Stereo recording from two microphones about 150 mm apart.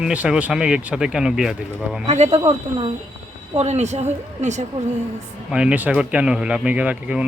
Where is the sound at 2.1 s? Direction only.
45° right (ahead or behind).